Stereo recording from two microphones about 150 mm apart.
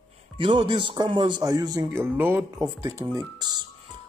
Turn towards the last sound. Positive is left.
turn(degrees=-25)  # may be behind; listen again after turning